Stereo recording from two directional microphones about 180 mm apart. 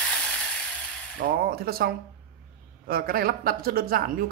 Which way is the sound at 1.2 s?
55° right (ahead or behind).